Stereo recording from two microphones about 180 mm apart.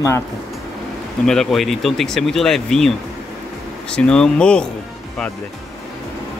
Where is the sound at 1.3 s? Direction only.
Centre (ahead or behind).